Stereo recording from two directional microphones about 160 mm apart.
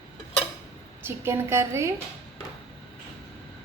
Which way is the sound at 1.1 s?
15° right (ahead or behind).